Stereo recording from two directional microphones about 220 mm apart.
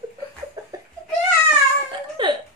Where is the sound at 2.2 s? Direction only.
20° right (ahead or behind).